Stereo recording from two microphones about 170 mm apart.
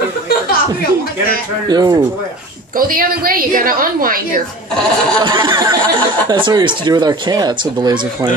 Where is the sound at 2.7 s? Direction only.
55° right (ahead or behind).